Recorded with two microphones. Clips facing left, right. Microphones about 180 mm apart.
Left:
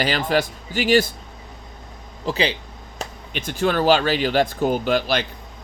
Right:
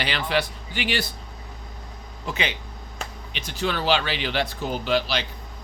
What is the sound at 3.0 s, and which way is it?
Speech, 50° left (ahead or behind).